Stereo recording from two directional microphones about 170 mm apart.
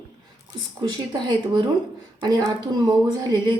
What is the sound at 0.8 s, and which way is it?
Speech, 25° right (ahead or behind).